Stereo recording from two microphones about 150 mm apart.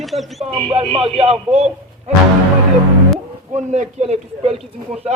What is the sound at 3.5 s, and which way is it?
A man's voice, 50° right (ahead or behind).